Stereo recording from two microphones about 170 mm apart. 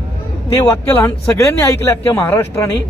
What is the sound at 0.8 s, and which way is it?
A man's voice, 10° left (ahead or behind).